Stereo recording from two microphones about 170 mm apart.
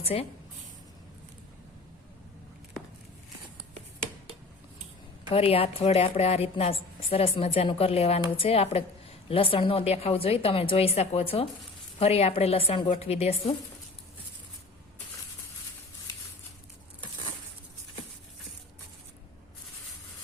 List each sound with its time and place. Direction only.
0.0 s a woman's voice: 35° left (ahead or behind)
5.3 s a woman's voice: 35° left (ahead or behind)